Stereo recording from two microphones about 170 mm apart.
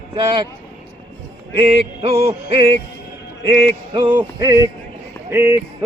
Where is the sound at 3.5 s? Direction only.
30° right (ahead or behind).